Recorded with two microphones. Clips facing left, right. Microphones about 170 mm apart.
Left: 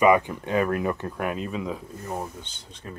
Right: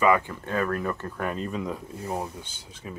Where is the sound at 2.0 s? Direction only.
10° right (ahead or behind).